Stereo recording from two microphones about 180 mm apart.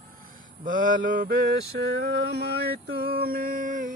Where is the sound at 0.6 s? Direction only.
45° right (ahead or behind).